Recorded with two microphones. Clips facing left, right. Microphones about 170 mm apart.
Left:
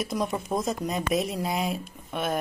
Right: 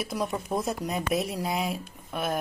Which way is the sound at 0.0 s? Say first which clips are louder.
Left 2 dB; 5° right (ahead or behind).